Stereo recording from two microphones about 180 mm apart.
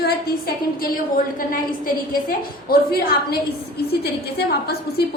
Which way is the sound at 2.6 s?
55° left (ahead or behind).